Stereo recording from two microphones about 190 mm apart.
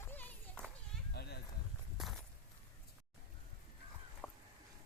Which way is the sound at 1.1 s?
60° left (ahead or behind).